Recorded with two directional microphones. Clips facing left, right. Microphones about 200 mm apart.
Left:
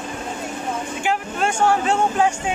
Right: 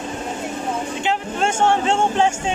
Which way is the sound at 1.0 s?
25° right (ahead or behind).